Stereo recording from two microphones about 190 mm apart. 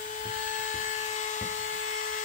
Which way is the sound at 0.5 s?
40° left (ahead or behind).